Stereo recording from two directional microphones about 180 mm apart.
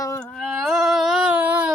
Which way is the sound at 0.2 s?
5° left (ahead or behind).